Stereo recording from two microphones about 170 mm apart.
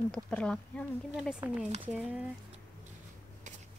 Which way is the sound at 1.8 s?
10° right (ahead or behind).